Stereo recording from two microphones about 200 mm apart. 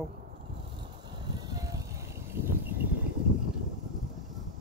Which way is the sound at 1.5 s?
15° right (ahead or behind).